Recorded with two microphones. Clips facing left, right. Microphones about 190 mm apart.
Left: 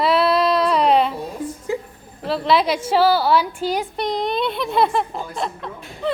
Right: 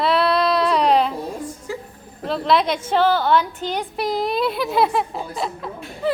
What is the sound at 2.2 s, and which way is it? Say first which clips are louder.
A woman's voice: left 1 dB; centre (ahead or behind).